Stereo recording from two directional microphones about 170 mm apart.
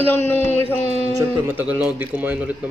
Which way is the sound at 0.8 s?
40° right (ahead or behind).